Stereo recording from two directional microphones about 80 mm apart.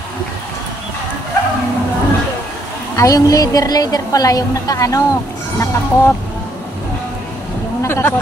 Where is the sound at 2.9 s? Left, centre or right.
Left.